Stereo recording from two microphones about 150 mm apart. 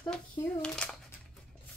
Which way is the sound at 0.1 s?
5° left (ahead or behind).